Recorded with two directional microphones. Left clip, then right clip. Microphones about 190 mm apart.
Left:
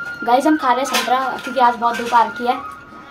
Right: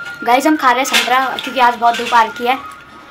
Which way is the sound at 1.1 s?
15° right (ahead or behind).